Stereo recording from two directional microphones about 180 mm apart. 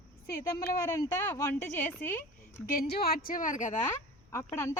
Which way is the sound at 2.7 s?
60° left (ahead or behind).